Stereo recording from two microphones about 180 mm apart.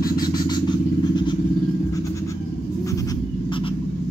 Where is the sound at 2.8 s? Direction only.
20° left (ahead or behind).